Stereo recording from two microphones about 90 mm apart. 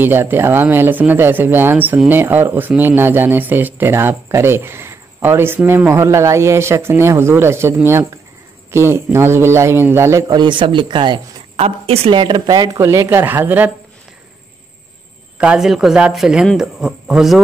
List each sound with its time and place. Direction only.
0.0 s speech: 25° right (ahead or behind)
10.2 s speech: 55° right (ahead or behind)
11.5 s speech: 90° right; by 12.7 s 50° right (ahead or behind)
12.7 s speech: 35° right (ahead or behind)
15.3 s speech: 10° right (ahead or behind)